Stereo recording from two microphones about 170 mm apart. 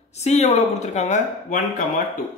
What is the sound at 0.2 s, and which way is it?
A woman's voice, 40° left (ahead or behind).